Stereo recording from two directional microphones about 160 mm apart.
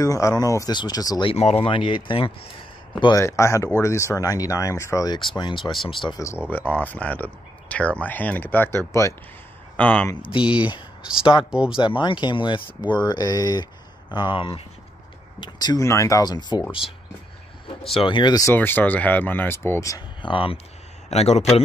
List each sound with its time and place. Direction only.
0.0 s speech: 20° left (ahead or behind)
1.3 s speech: 40° left (ahead or behind)
5.6 s speech: centre (ahead or behind)
5.9 s speech: 30° left (ahead or behind)
6.5 s speech: 10° left (ahead or behind)
10.4 s speech: 5° right (ahead or behind)
11.8 s speech: 30° left (ahead or behind)
17.8 s speech: 35° left (ahead or behind)
18.5 s speech: 10° left (ahead or behind)
20.2 s speech: 35° left (ahead or behind)